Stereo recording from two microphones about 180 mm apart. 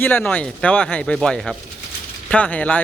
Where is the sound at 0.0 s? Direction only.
10° left (ahead or behind).